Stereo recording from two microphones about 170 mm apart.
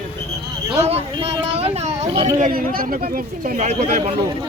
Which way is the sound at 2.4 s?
55° right (ahead or behind).